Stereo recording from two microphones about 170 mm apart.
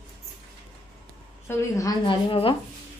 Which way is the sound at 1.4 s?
15° left (ahead or behind).